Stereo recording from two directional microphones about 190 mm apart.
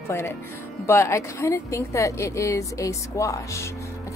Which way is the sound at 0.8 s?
15° left (ahead or behind).